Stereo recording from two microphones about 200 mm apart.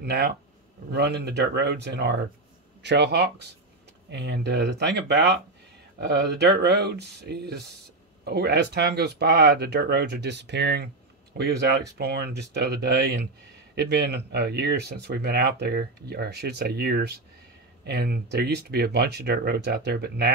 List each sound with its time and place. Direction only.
0.0 s speech: 55° right (ahead or behind)